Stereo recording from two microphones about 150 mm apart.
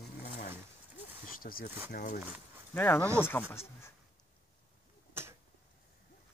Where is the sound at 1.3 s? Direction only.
75° left (ahead or behind).